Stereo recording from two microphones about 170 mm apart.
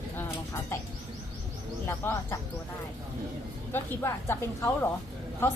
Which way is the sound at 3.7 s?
15° left (ahead or behind).